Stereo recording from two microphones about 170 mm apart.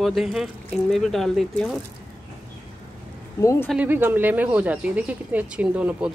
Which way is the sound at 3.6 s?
10° right (ahead or behind).